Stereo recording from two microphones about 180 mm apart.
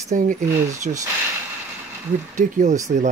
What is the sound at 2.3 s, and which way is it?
Speech, 45° right (ahead or behind).